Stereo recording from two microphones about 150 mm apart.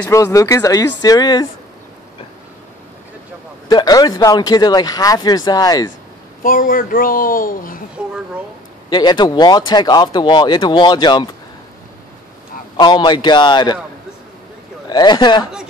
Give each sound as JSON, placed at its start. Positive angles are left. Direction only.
{"t": 0.1, "sound": "speech", "side_deg": 20}
{"t": 3.6, "sound": "speech", "side_deg": 25}
{"t": 6.4, "sound": "speech", "side_deg": 70}
{"t": 8.0, "sound": "speech", "side_deg": -10}
{"t": 8.9, "sound": "speech", "side_deg": 30}
{"t": 12.7, "sound": "speech", "side_deg": 30}
{"t": 14.9, "sound": "speech", "side_deg": 30}